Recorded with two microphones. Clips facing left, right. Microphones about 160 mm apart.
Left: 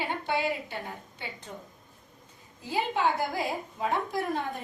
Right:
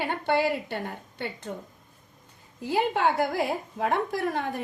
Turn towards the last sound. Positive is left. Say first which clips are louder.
# right 3 dB
turn(degrees=-65)  # may be behind; listen again after turning